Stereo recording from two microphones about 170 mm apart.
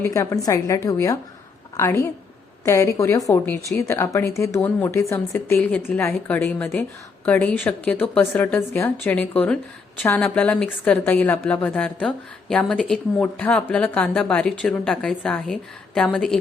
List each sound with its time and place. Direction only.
0.0 s a woman's voice: 15° left (ahead or behind)